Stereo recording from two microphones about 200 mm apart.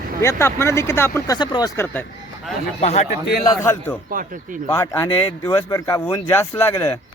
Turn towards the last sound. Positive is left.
turn(degrees=10)  # may be behind; listen again after turning